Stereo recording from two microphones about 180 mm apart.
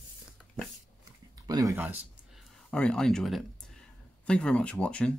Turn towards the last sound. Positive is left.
turn(degrees=5)  # may be behind; listen again after turning